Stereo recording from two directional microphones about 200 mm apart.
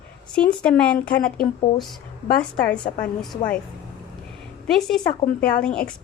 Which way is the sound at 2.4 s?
5° left (ahead or behind).